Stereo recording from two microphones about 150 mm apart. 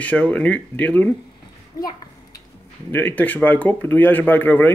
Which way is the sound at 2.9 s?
15° left (ahead or behind).